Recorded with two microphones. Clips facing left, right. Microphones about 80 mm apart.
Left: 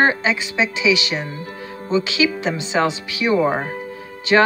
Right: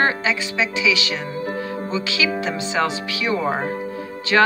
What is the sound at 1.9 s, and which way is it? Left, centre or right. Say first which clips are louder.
Speech: left 5 dB; left.